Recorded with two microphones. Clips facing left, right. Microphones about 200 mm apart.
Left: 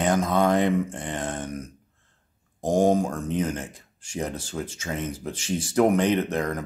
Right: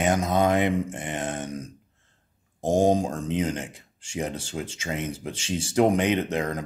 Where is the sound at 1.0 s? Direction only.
20° right (ahead or behind).